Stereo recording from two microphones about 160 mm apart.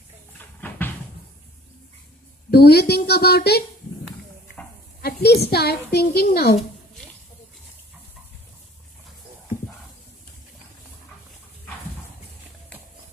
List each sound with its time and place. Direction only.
0.6 s a sound: 10° left (ahead or behind)
2.5 s a woman's voice: 85° left
5.0 s a child's voice: 85° left